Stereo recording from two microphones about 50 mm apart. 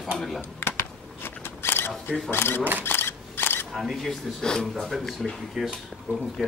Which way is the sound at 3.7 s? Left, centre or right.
Centre.